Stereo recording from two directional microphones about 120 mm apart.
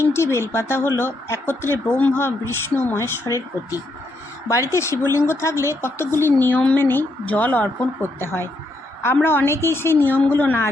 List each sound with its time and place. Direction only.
0.0 s speech: 20° left (ahead or behind)
9.0 s speech: 20° left (ahead or behind)